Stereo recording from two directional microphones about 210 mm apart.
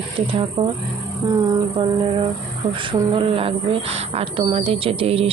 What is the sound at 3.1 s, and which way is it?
A woman's voice, 25° right (ahead or behind).